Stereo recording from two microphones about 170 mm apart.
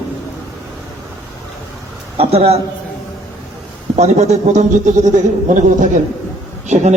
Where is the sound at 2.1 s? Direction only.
35° right (ahead or behind).